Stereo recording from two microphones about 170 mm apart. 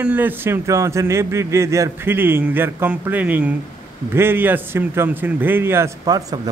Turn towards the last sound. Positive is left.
turn(degrees=-20)  # may be behind; listen again after turning